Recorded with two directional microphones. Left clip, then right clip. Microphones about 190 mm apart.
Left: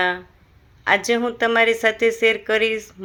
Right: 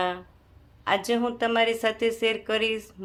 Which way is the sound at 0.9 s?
15° left (ahead or behind).